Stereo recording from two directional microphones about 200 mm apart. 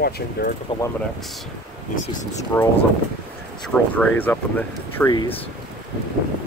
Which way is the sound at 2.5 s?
10° left (ahead or behind).